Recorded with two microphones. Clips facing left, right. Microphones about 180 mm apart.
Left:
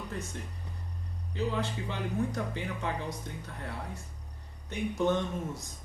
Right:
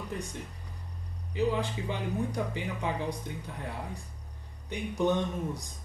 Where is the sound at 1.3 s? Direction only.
15° right (ahead or behind).